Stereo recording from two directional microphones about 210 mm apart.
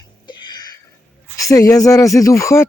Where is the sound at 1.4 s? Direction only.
15° left (ahead or behind).